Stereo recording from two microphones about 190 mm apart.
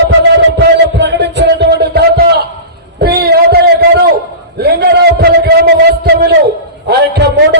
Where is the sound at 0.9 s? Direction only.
65° right (ahead or behind).